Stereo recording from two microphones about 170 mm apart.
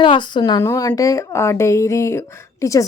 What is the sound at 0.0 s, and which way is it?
A woman's voice, 30° left (ahead or behind).